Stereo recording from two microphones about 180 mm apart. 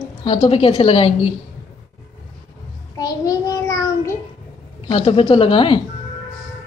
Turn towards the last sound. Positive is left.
turn(degrees=30)  # may be behind; listen again after turning